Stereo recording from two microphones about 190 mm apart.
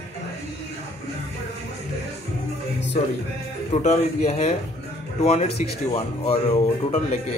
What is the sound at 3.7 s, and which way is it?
Speech, 35° left (ahead or behind).